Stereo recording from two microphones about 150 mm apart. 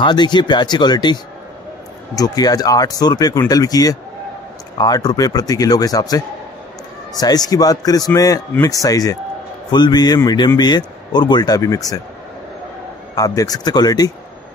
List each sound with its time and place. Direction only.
0.0 s a man's voice: 30° left (ahead or behind)
13.1 s a man's voice: 25° left (ahead or behind)